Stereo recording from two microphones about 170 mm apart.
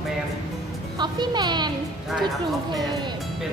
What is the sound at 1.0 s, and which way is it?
Speech, 25° right (ahead or behind).